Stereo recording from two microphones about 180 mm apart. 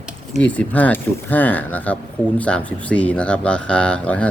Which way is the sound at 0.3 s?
5° left (ahead or behind).